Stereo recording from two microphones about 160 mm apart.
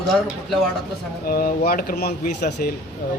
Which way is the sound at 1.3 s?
65° left (ahead or behind).